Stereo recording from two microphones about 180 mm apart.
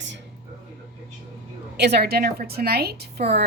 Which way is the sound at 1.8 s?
65° right (ahead or behind).